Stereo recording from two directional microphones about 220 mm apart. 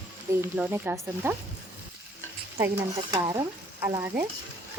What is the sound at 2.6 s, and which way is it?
Speech, 15° right (ahead or behind).